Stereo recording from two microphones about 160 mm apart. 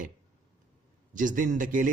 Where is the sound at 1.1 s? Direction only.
55° right (ahead or behind).